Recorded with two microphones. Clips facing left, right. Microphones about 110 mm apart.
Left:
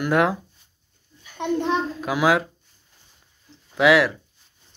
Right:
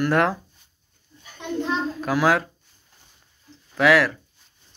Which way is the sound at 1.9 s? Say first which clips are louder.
Right 2 dB; 10° left (ahead or behind).